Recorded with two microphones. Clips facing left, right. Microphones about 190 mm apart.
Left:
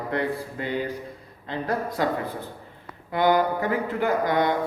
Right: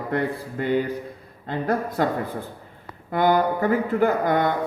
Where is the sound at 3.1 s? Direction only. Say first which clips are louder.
Right 1 dB; 50° right (ahead or behind).